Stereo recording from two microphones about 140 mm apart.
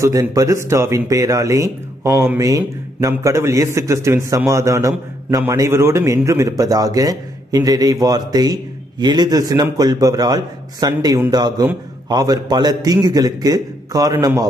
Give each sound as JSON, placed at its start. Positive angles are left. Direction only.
{"t": 0.0, "sound": "a man's voice", "side_deg": -25}